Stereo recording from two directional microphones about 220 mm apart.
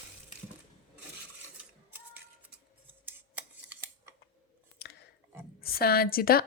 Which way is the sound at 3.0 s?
10° right (ahead or behind).